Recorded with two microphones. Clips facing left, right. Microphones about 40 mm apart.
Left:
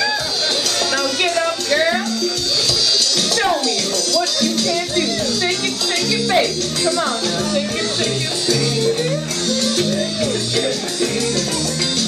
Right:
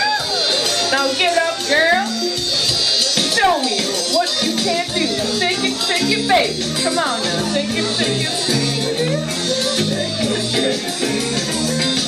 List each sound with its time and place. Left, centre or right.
0.9 s a sound: centre
4.1 s music: centre
6.0 s speech: centre